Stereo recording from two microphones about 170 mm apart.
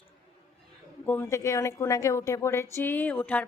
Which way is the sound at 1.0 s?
15° left (ahead or behind).